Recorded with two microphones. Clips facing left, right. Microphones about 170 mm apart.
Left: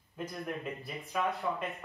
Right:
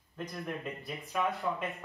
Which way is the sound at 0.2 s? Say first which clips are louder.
Even; centre (ahead or behind).